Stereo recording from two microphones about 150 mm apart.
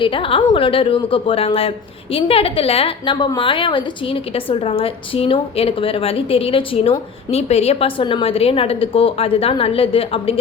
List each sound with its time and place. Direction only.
0.0 s a woman's voice: 35° left (ahead or behind)